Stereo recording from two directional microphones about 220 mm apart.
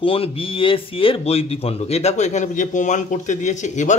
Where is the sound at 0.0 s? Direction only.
25° left (ahead or behind).